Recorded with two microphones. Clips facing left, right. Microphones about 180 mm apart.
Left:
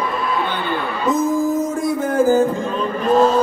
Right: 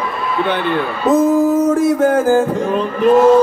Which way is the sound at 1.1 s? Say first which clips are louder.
Right 6 dB; 75° right (ahead or behind).